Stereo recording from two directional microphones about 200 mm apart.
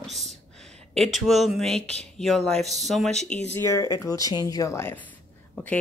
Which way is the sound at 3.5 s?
15° left (ahead or behind).